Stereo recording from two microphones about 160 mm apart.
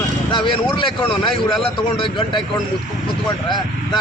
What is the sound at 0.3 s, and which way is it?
Speech, 30° left (ahead or behind).